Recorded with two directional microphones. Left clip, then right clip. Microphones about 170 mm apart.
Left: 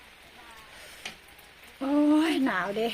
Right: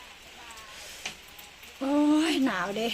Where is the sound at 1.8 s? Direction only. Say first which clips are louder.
Left 1 dB; 20° left (ahead or behind).